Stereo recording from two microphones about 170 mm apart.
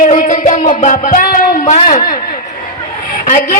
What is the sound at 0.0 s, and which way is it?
Music, 45° left (ahead or behind).